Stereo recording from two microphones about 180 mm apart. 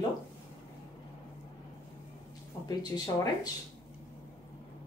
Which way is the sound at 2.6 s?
20° left (ahead or behind).